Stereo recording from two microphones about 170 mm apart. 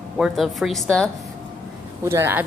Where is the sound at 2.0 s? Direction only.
15° right (ahead or behind).